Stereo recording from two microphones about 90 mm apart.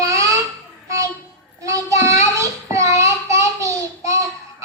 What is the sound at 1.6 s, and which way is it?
Child singing, 35° right (ahead or behind).